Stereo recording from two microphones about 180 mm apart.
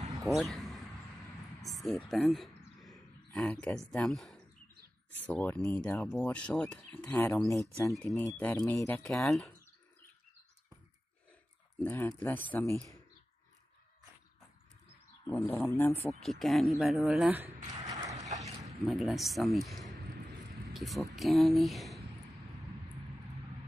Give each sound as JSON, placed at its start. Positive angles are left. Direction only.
{"t": 0.2, "sound": "a sound", "side_deg": 0}
{"t": 1.7, "sound": "speech", "side_deg": 0}
{"t": 2.3, "sound": "a sound", "side_deg": 0}
{"t": 3.9, "sound": "speech", "side_deg": 0}
{"t": 9.1, "sound": "speech", "side_deg": 5}
{"t": 11.8, "sound": "speech", "side_deg": 10}
{"t": 15.2, "sound": "speech", "side_deg": 10}
{"t": 17.9, "sound": "vehicle", "side_deg": -40}
{"t": 18.9, "sound": "speech", "side_deg": 0}
{"t": 20.7, "sound": "speech", "side_deg": 0}